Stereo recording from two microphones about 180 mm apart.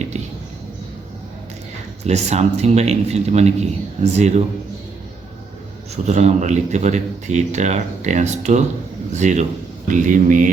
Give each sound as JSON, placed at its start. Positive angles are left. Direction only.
{"t": 2.0, "sound": "speech", "side_deg": -40}
{"t": 6.1, "sound": "speech", "side_deg": -40}